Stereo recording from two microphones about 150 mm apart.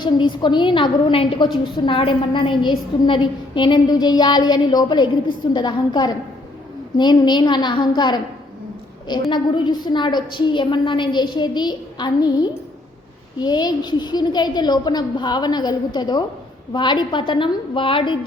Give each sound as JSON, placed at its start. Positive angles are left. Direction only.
{"t": 0.0, "sound": "a woman's voice", "side_deg": 30}
{"t": 9.3, "sound": "a woman's voice", "side_deg": 30}